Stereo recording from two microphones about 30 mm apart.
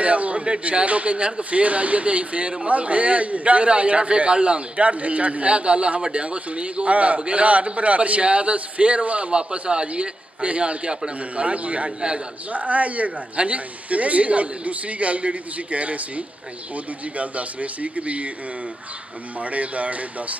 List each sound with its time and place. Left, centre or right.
0.0 s a man's voice: right
9.3 s a man's voice: right
19.4 s a man's voice: right